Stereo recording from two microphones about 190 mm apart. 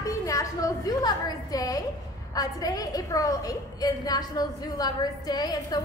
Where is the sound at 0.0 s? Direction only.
15° left (ahead or behind).